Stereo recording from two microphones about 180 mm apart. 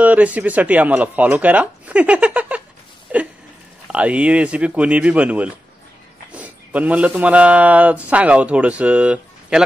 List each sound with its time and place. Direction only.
0.0 s speech: 10° right (ahead or behind)
3.8 s a man's voice: 5° right (ahead or behind)